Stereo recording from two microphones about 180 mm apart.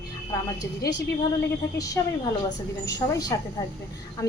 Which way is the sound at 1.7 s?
20° left (ahead or behind).